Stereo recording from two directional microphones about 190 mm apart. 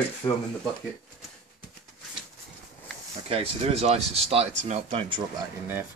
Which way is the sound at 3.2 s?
30° right (ahead or behind).